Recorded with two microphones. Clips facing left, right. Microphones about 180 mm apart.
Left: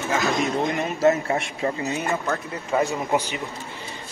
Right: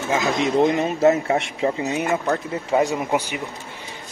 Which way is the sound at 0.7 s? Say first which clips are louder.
Right 3 dB; 20° right (ahead or behind).